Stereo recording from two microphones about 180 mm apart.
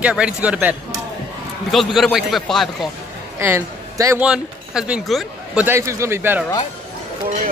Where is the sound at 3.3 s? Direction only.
15° right (ahead or behind).